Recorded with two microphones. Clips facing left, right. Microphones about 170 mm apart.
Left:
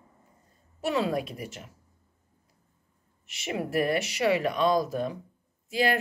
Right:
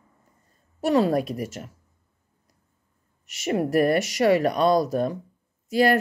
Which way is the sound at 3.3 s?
45° right (ahead or behind).